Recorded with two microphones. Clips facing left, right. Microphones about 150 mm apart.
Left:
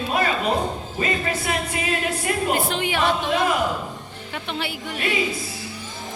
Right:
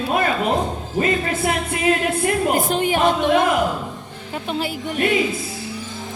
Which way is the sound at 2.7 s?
45° right (ahead or behind).